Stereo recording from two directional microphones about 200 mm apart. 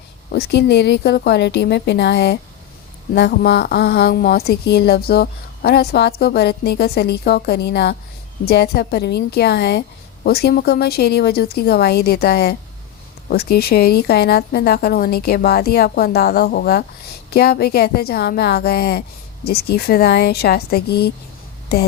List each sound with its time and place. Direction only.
0.3 s a woman's voice: 50° left (ahead or behind)